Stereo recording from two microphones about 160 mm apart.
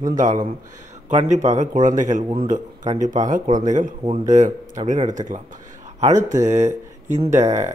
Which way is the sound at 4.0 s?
30° right (ahead or behind).